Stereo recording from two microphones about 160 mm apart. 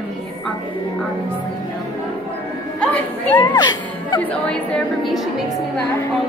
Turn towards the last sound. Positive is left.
turn(degrees=0)  # may be behind; listen again after turning